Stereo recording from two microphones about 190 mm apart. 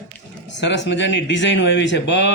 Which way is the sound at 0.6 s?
70° left (ahead or behind).